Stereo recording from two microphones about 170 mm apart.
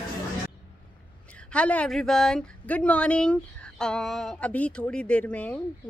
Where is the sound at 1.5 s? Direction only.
5° left (ahead or behind).